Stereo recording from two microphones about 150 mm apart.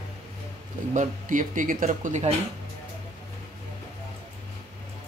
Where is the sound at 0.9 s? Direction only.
55° right (ahead or behind).